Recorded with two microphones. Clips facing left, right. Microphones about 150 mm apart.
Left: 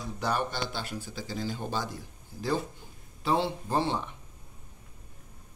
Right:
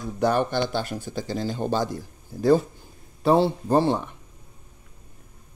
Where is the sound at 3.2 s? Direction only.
40° right (ahead or behind).